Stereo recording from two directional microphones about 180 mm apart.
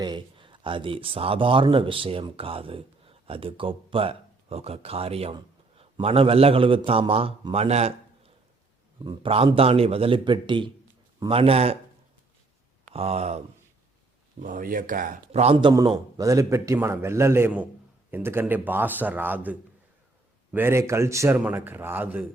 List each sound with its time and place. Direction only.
0.0 s a man's voice: 25° right (ahead or behind)
12.9 s a man's voice: 35° right (ahead or behind)
14.4 s speech: 50° right (ahead or behind)
15.3 s a man's voice: 35° right (ahead or behind)
15.7 s a man's voice: 20° right (ahead or behind)